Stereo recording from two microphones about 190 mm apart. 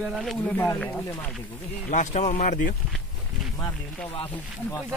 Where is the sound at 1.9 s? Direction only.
40° left (ahead or behind).